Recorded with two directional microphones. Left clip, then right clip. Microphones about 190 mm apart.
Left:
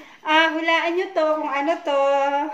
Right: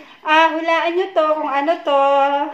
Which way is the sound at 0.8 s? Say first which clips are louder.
Right 4 dB; 10° left (ahead or behind).